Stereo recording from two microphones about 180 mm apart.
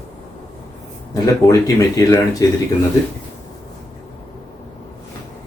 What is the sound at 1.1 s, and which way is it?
Speech, 15° left (ahead or behind).